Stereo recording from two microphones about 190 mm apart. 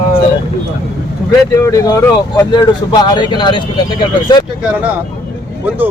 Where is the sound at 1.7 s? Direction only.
15° left (ahead or behind).